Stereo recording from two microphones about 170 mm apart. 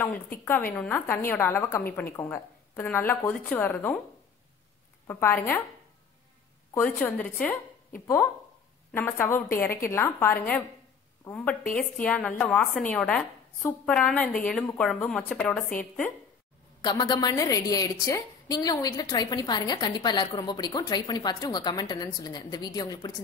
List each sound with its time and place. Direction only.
0.7 s a woman's voice: 10° left (ahead or behind)
5.0 s a woman's voice: 15° left (ahead or behind)
6.7 s a woman's voice: 10° left (ahead or behind)
16.8 s a woman's voice: 25° left (ahead or behind)